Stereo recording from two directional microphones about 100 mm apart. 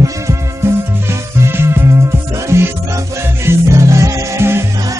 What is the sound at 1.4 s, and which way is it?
Music, 25° right (ahead or behind).